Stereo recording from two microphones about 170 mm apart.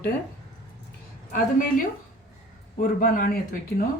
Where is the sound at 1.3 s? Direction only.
50° left (ahead or behind).